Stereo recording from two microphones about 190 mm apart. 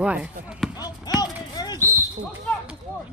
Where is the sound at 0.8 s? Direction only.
20° left (ahead or behind).